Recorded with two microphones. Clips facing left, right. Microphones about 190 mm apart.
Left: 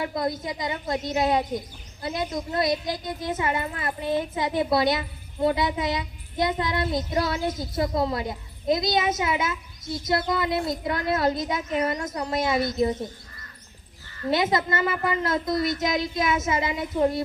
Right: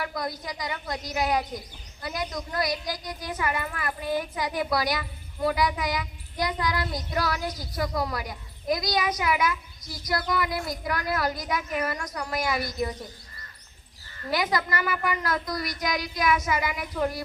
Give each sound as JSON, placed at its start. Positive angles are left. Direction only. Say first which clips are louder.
{"t": 0.0, "sound": "speech", "louder": "left 5 dB", "side_deg": 25}
{"t": 14.3, "sound": "speech", "louder": "left 4 dB", "side_deg": 25}